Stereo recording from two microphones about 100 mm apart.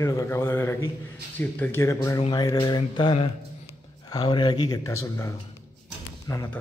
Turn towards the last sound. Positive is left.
turn(degrees=35)  # may be behind; listen again after turning